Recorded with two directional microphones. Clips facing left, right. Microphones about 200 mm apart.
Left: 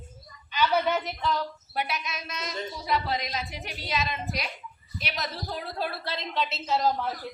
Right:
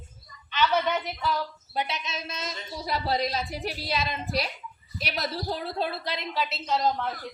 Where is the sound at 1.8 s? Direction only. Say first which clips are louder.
Right 1 dB; 25° right (ahead or behind).